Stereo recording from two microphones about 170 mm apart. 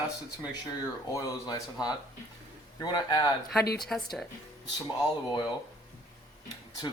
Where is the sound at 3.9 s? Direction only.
Centre (ahead or behind).